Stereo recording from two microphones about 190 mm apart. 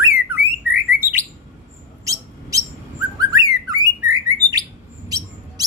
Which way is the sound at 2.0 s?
15° right (ahead or behind).